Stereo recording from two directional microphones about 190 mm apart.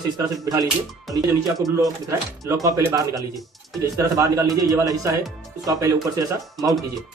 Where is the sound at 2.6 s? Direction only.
15° right (ahead or behind).